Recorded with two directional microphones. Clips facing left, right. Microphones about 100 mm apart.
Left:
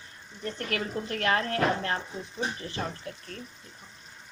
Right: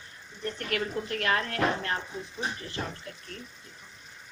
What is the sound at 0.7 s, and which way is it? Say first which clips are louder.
Speech: right 1 dB; 30° left (ahead or behind).